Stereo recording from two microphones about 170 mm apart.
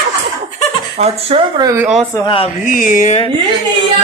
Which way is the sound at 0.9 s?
35° right (ahead or behind).